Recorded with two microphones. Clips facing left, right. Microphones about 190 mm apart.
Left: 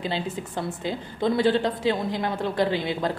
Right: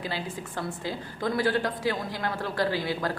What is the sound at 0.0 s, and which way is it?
A woman's voice, 25° left (ahead or behind).